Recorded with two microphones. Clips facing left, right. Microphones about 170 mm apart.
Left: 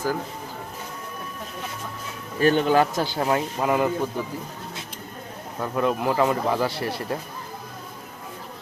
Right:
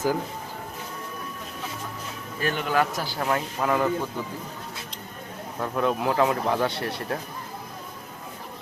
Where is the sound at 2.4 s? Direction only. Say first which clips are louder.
Left 6 dB; 30° left (ahead or behind); by 3.9 s 15° left (ahead or behind).